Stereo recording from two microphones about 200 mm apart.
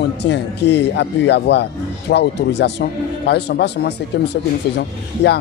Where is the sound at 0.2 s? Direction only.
60° left (ahead or behind).